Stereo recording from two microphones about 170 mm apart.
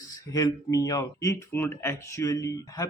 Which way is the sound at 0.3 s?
20° left (ahead or behind).